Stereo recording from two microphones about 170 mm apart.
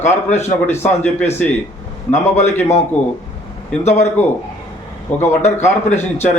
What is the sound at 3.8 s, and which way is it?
Speech, 45° left (ahead or behind).